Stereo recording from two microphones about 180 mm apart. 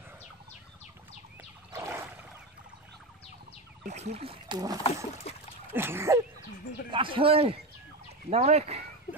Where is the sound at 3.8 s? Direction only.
40° right (ahead or behind).